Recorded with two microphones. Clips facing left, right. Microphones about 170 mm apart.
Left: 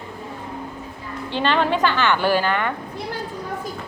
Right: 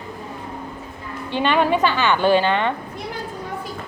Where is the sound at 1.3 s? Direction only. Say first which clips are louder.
Right 2 dB; 15° right (ahead or behind).